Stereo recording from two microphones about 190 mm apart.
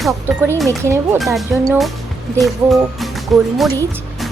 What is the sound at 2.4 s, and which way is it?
Speech, centre (ahead or behind).